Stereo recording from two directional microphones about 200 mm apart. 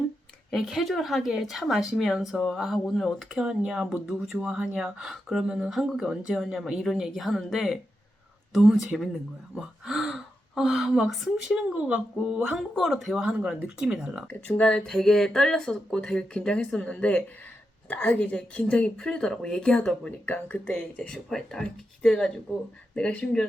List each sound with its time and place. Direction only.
0.5 s speech: centre (ahead or behind)